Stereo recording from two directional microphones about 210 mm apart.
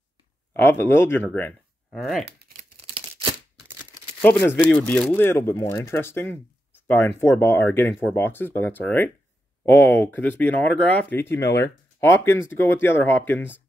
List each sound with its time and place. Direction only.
0.6 s speech: 10° left (ahead or behind)
2.2 s crumpling: 50° right (ahead or behind)
4.2 s speech: 10° left (ahead or behind)